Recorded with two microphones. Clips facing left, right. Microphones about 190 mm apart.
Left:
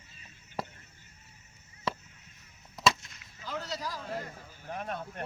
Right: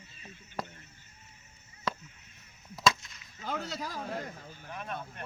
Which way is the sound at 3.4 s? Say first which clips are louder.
Right 1 dB; 55° right (ahead or behind).